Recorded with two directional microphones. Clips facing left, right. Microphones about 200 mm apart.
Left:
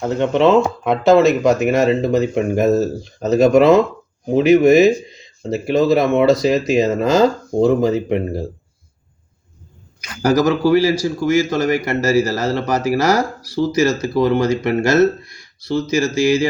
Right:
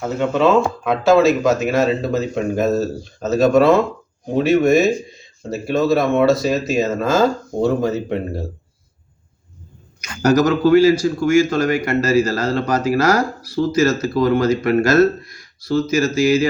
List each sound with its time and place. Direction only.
0.0 s speech: 20° left (ahead or behind)
10.2 s speech: 10° left (ahead or behind)